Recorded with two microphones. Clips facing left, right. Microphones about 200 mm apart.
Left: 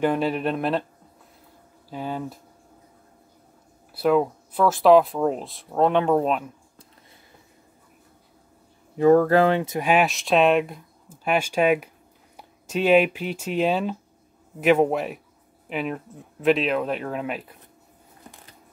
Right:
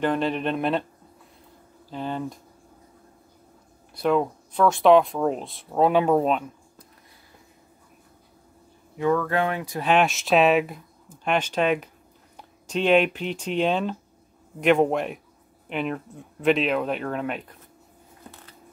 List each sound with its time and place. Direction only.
0.0 s speech: 10° left (ahead or behind)
1.9 s speech: 10° left (ahead or behind)
3.9 s speech: 5° left (ahead or behind)
8.9 s speech: 40° left (ahead or behind)
9.8 s speech: 10° left (ahead or behind)